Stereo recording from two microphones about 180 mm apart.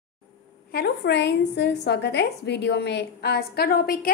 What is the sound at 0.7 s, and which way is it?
A woman's voice, 60° left (ahead or behind).